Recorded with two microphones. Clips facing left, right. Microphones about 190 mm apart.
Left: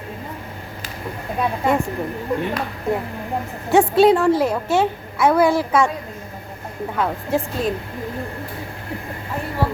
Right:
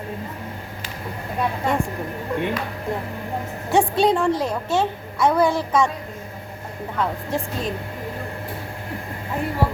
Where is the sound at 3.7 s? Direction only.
5° left (ahead or behind).